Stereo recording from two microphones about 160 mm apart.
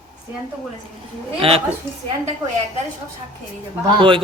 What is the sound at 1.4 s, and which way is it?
Speech, 35° right (ahead or behind).